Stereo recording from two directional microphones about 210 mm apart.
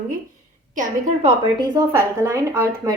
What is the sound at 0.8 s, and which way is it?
A woman's voice, 35° right (ahead or behind).